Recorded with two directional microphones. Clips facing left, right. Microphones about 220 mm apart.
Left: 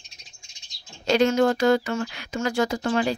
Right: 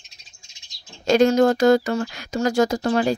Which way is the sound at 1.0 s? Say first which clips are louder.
Right 4 dB; 45° right (ahead or behind).